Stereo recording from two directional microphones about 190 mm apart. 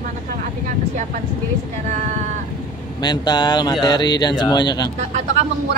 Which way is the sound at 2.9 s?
20° left (ahead or behind).